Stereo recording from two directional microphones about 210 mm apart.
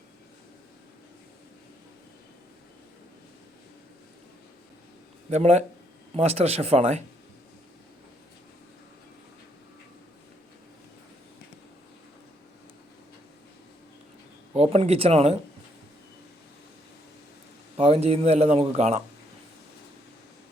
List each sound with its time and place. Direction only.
5.3 s speech: 30° right (ahead or behind)
14.5 s speech: 30° right (ahead or behind)
17.7 s speech: 30° right (ahead or behind)